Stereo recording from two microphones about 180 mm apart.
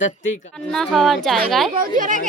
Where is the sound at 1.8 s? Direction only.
50° right (ahead or behind).